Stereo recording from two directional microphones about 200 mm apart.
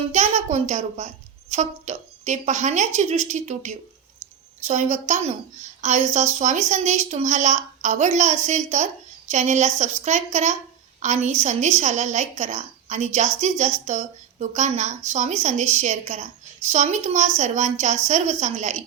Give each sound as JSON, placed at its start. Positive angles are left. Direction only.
{"t": 0.1, "sound": "speech", "side_deg": -35}